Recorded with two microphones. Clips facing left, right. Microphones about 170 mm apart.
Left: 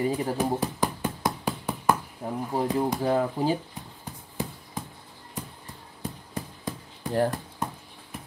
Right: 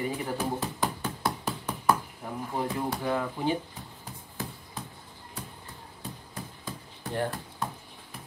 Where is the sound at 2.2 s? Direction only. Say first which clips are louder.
Left 5 dB; 30° left (ahead or behind).